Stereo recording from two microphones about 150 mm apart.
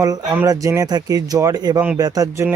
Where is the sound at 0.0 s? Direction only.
25° right (ahead or behind).